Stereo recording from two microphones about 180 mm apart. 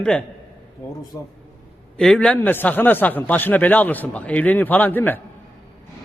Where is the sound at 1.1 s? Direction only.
20° left (ahead or behind).